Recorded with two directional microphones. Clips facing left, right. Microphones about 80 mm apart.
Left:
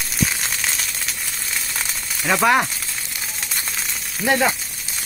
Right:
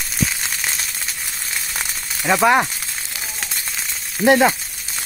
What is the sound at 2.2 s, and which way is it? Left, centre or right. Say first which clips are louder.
Speech: right 2 dB; centre.